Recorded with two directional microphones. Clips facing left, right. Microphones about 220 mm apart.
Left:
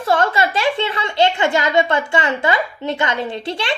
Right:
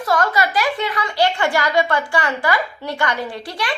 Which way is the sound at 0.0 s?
30° left (ahead or behind).